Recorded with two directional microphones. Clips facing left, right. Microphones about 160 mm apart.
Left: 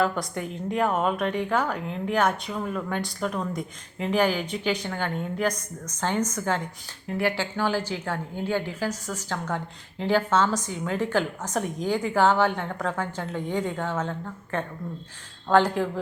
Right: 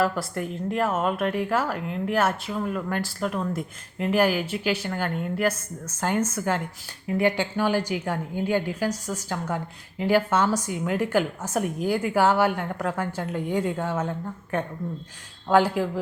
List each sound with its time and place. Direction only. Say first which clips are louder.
0.0 s a woman's voice: right 1 dB; 5° right (ahead or behind)